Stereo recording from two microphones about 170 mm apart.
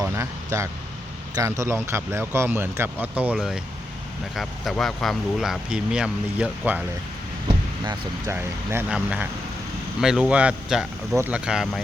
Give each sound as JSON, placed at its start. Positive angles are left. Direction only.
{"t": 0.0, "sound": "vehicle", "side_deg": -15}
{"t": 1.4, "sound": "speech", "side_deg": -15}
{"t": 7.9, "sound": "speech", "side_deg": -15}